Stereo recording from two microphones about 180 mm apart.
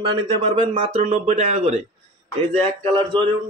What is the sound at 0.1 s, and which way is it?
Speech, 30° right (ahead or behind).